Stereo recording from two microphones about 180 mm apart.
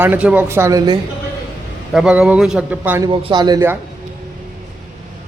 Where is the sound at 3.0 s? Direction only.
25° right (ahead or behind).